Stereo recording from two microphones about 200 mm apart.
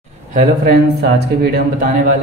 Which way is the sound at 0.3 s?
40° right (ahead or behind).